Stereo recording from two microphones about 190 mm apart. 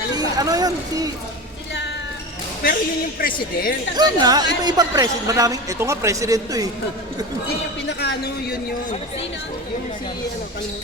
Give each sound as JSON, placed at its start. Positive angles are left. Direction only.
{"t": 0.1, "sound": "speech", "side_deg": -20}
{"t": 3.2, "sound": "speech", "side_deg": 50}
{"t": 3.9, "sound": "a man's voice", "side_deg": -20}
{"t": 7.9, "sound": "a woman's voice", "side_deg": 60}